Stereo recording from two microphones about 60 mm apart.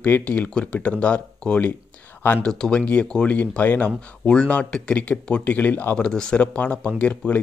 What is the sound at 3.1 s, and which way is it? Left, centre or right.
Speech, left.